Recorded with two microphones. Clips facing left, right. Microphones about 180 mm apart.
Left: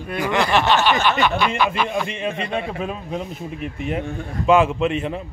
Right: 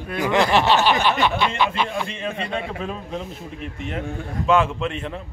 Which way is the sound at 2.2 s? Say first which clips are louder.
Left 2 dB; 10° left (ahead or behind).